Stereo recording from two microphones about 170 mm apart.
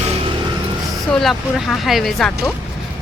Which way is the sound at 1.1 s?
Centre (ahead or behind).